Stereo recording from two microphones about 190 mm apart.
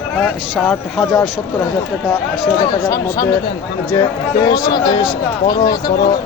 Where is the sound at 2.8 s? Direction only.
15° left (ahead or behind).